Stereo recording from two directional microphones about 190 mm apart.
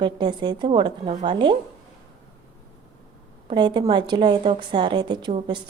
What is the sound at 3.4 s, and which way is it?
Speech, 25° right (ahead or behind).